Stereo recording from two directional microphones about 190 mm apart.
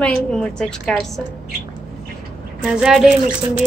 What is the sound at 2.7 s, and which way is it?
Speech, 5° right (ahead or behind).